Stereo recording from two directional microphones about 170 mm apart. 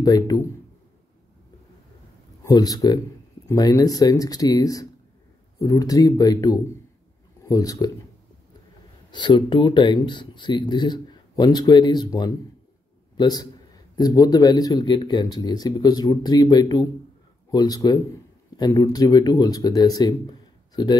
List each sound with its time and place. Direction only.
0.0 s a man's voice: 20° left (ahead or behind)
2.4 s a man's voice: 20° left (ahead or behind)
9.1 s a man's voice: 25° left (ahead or behind)